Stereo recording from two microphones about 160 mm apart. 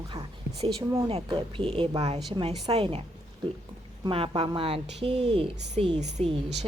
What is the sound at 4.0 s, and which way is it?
A woman's voice, 35° right (ahead or behind).